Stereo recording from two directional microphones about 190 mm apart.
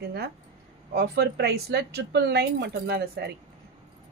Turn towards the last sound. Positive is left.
turn(degrees=-55)  # may be behind; listen again after turning